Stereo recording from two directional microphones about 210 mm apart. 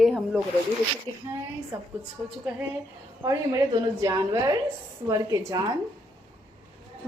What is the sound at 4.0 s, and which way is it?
A woman's voice, 15° right (ahead or behind).